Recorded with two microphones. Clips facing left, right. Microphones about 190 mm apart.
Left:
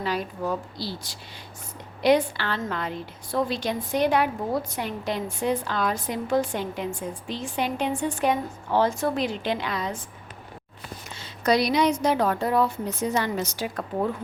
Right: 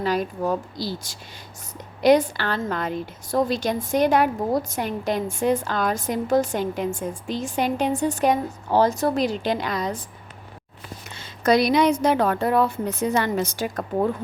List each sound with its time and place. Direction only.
0.0 s a woman's voice: 45° right (ahead or behind)
11.4 s a woman's voice: 50° right (ahead or behind)